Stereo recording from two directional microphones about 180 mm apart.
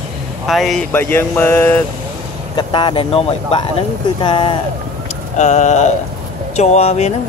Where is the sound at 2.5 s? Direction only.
25° left (ahead or behind).